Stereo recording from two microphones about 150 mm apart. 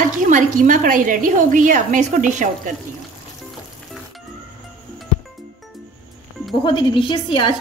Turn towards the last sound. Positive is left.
turn(degrees=35)  # may be behind; listen again after turning